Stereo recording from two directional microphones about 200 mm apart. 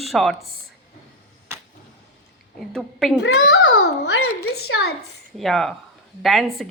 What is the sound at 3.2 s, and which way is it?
Babbling, 60° left (ahead or behind).